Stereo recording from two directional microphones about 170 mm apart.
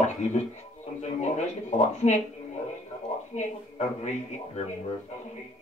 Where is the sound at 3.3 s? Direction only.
40° left (ahead or behind).